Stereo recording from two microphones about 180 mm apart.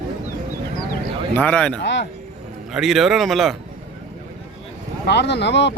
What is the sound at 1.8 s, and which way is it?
Speech, 75° left (ahead or behind).